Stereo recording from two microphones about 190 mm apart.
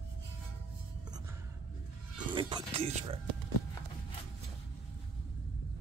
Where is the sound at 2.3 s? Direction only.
25° right (ahead or behind).